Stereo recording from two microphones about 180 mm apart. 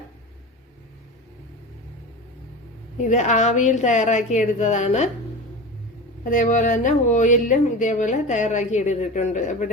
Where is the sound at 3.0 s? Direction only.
40° left (ahead or behind).